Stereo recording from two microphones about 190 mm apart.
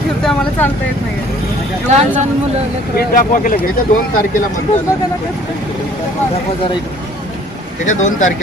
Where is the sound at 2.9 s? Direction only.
45° left (ahead or behind).